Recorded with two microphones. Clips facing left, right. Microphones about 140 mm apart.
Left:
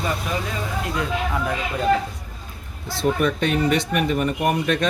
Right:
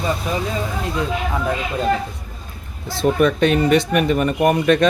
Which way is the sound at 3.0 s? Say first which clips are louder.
Right 5 dB; 85° right.